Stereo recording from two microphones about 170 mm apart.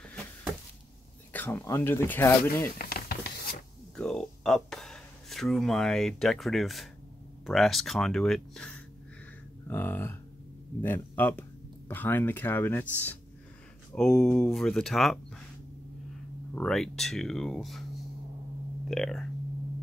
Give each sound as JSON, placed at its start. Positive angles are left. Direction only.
{"t": 1.3, "sound": "speech", "side_deg": 15}
{"t": 2.8, "sound": "a sound", "side_deg": 65}
{"t": 3.9, "sound": "speech", "side_deg": 5}
{"t": 9.7, "sound": "music", "side_deg": 10}
{"t": 10.8, "sound": "speech", "side_deg": 10}
{"t": 13.9, "sound": "speech", "side_deg": 5}
{"t": 16.5, "sound": "speech", "side_deg": 5}
{"t": 18.9, "sound": "speech", "side_deg": 0}